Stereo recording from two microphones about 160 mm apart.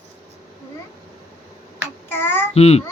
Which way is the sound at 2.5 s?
40° left (ahead or behind).